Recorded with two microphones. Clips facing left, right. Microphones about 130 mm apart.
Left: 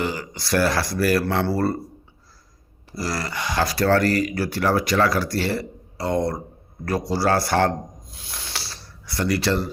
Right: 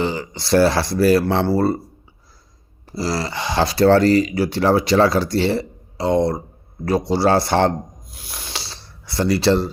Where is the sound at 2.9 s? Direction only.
25° right (ahead or behind).